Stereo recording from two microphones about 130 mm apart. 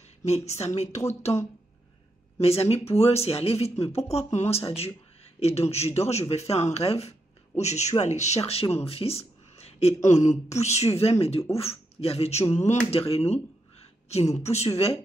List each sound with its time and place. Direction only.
0.2 s speech: 60° left (ahead or behind)
2.4 s speech: 50° left (ahead or behind)
10.0 s speech: 65° left (ahead or behind)